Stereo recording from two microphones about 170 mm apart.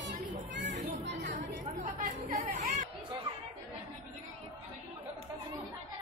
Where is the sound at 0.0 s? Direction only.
90° right.